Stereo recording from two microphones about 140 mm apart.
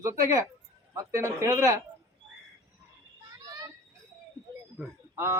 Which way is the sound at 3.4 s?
30° right (ahead or behind).